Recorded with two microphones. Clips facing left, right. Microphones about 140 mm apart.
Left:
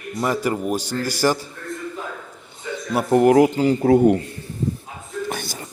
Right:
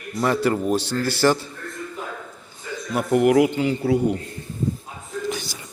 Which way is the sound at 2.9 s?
35° left (ahead or behind).